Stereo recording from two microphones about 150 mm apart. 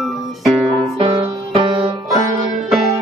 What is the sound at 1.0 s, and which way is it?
Music, 40° right (ahead or behind).